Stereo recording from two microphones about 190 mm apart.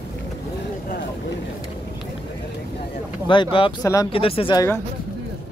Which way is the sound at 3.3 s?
25° left (ahead or behind).